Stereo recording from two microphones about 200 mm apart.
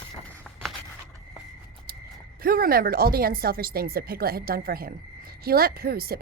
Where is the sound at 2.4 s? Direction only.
50° right (ahead or behind).